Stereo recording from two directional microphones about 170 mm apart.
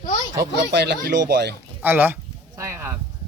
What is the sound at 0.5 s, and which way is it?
Speech, 75° right (ahead or behind).